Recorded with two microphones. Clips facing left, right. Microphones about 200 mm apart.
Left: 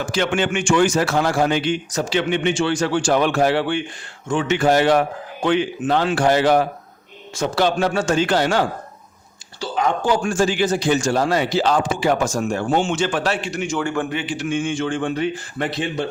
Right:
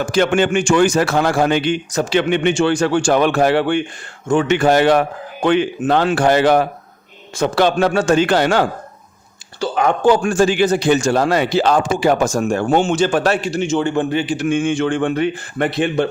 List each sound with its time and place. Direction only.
0.0 s a man's voice: 45° right (ahead or behind)
12.9 s a man's voice: 40° right (ahead or behind)
13.5 s a man's voice: 25° right (ahead or behind); by 16.0 s 60° right (ahead or behind)